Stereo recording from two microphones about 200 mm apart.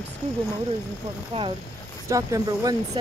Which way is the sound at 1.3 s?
30° right (ahead or behind).